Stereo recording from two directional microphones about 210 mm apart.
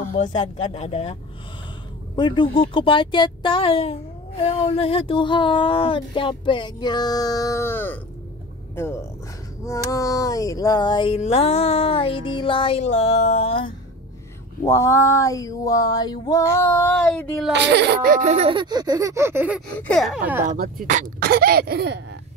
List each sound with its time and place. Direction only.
0.1 s a woman's voice: 35° left (ahead or behind)
2.1 s speech: 20° left (ahead or behind)
2.5 s a sound: 25° left (ahead or behind)
8.7 s speech: 10° left (ahead or behind)
9.8 s a sound: 15° left (ahead or behind)
14.6 s a sound: 15° left (ahead or behind)
17.5 s speech: 55° right (ahead or behind)
18.2 s speech: 30° right (ahead or behind); by 19.6 s 10° right (ahead or behind)
19.8 s gasp: centre (ahead or behind)
20.4 s speech: 40° right (ahead or behind)